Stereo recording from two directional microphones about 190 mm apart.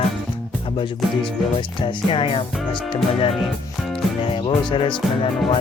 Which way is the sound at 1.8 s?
25° left (ahead or behind).